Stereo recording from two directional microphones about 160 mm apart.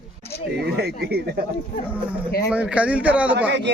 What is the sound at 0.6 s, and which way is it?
Speech, 80° right.